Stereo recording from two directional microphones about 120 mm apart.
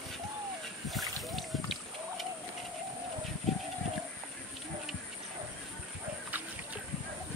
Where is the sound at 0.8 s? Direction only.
Centre (ahead or behind).